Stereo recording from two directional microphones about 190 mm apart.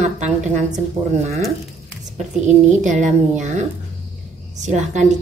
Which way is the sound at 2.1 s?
40° right (ahead or behind).